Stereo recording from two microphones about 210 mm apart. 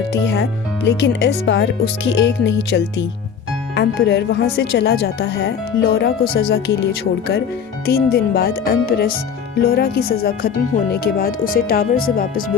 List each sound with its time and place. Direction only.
0.1 s speech: 60° left (ahead or behind); by 12.5 s 45° left (ahead or behind)